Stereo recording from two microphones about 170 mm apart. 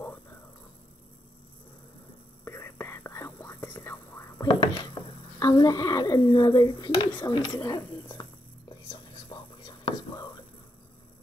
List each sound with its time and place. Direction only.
2.4 s whispering: 15° left (ahead or behind)
5.0 s a sound: 30° left (ahead or behind)
5.4 s speech: 25° left (ahead or behind)
8.9 s whispering: 30° left (ahead or behind)